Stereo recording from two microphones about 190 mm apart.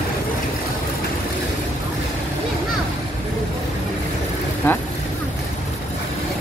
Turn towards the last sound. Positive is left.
turn(degrees=10)  # may be behind; listen again after turning